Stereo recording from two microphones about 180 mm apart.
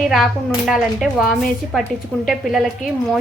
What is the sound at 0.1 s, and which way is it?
A woman's voice, centre (ahead or behind).